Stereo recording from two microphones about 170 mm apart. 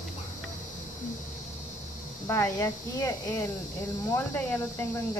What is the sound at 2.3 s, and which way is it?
Speech, 15° left (ahead or behind).